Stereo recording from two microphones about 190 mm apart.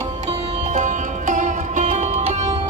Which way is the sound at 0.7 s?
40° right (ahead or behind).